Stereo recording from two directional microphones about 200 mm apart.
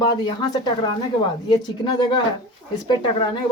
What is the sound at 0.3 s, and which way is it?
Speech, 20° left (ahead or behind).